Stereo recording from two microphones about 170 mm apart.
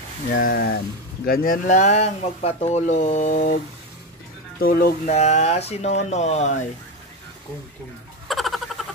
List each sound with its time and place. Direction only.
0.4 s speech: 60° left (ahead or behind)
5.1 s speech: 40° left (ahead or behind)
8.3 s a sound: centre (ahead or behind)